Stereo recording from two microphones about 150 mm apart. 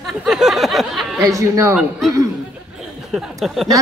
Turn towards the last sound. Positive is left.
turn(degrees=0)  # may be behind; listen again after turning